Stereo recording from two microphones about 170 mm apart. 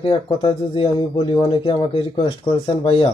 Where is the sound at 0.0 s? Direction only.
35° left (ahead or behind).